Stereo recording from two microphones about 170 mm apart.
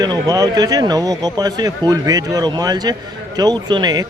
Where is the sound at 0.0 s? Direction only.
20° right (ahead or behind).